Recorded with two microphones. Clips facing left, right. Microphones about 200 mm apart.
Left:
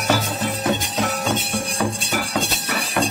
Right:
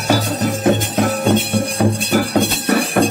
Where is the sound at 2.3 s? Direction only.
60° right (ahead or behind).